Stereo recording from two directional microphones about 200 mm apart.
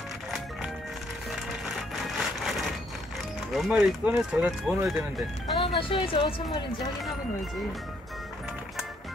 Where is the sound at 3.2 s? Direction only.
Centre (ahead or behind).